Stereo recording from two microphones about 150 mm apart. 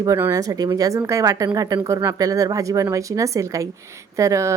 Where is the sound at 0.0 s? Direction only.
20° right (ahead or behind).